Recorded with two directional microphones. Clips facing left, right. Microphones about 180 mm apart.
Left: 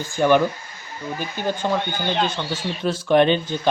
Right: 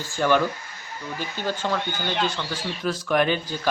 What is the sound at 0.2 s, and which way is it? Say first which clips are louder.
Speech: left 4 dB; 20° left (ahead or behind).